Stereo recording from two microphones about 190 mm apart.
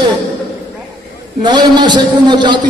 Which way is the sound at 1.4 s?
25° right (ahead or behind).